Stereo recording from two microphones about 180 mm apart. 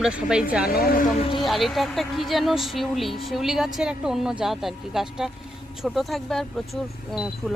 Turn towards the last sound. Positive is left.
turn(degrees=0)  # may be behind; listen again after turning